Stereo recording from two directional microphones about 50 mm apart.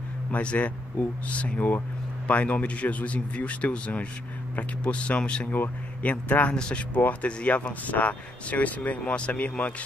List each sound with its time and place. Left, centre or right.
0.3 s a man's voice: left
5.5 s speech: left
6.5 s speech: centre
7.0 s speech: left